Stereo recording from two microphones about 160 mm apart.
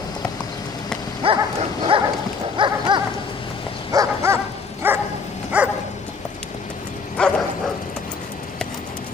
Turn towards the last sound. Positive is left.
turn(degrees=5)  # may be behind; listen again after turning